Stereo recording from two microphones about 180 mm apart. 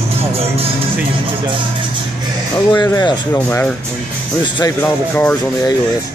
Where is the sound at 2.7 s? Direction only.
25° left (ahead or behind).